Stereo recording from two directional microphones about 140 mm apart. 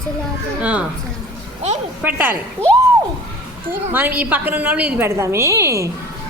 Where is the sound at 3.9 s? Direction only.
15° right (ahead or behind).